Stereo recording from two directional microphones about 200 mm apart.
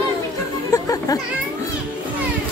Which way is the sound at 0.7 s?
20° left (ahead or behind).